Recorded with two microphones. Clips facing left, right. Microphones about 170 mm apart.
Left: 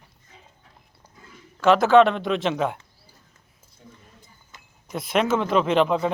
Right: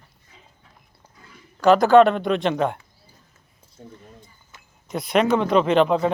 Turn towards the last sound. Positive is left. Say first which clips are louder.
# right 2 dB
turn(degrees=0)  # may be behind; listen again after turning